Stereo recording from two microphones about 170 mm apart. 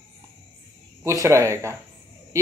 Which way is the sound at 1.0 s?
20° right (ahead or behind).